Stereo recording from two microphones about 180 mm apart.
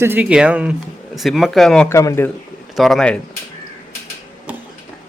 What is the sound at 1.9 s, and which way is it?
Speech, 15° left (ahead or behind).